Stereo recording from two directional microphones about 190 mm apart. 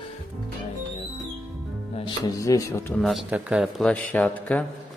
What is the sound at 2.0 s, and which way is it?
Speech, 25° left (ahead or behind).